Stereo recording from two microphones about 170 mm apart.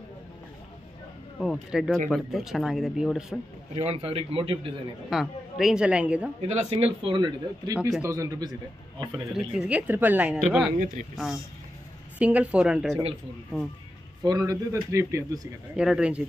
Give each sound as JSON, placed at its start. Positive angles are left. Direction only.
{"t": 1.4, "sound": "speech", "side_deg": 0}
{"t": 3.7, "sound": "a man's voice", "side_deg": -35}
{"t": 5.1, "sound": "speech", "side_deg": 0}
{"t": 6.4, "sound": "a man's voice", "side_deg": -40}
{"t": 7.2, "sound": "a woman's voice", "side_deg": -25}
{"t": 9.3, "sound": "a woman's voice", "side_deg": -5}
{"t": 14.2, "sound": "speech", "side_deg": -20}
{"t": 15.7, "sound": "speech", "side_deg": -5}